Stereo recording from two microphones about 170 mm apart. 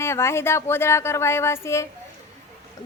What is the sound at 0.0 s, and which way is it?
A woman's voice, 15° left (ahead or behind).